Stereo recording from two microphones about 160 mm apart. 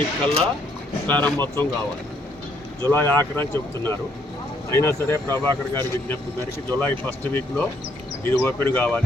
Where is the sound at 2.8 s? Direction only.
15° left (ahead or behind).